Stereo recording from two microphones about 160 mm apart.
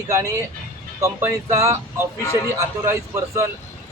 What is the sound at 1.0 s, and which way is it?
Speech, 20° right (ahead or behind).